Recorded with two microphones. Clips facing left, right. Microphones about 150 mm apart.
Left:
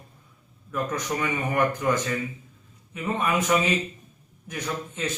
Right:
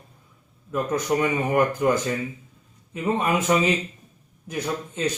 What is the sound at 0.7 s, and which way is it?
Speech, 25° right (ahead or behind).